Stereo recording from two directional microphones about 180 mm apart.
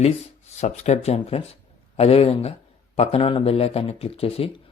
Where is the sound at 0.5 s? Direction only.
40° left (ahead or behind).